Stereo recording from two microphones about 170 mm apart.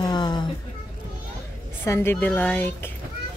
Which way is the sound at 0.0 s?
25° left (ahead or behind).